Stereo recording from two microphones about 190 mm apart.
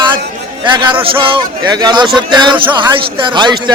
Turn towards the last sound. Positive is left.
turn(degrees=-25)  # may be behind; listen again after turning